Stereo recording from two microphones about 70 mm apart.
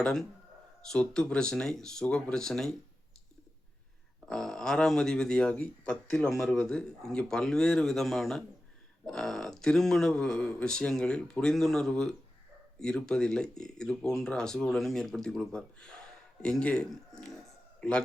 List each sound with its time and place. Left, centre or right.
0.0 s speech: centre
4.3 s speech: centre
6.2 s a man's voice: centre